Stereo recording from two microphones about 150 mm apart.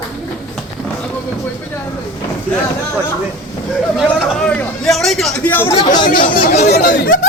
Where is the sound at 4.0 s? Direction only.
Centre (ahead or behind).